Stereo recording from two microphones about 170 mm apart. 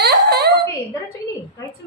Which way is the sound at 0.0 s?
75° right (ahead or behind).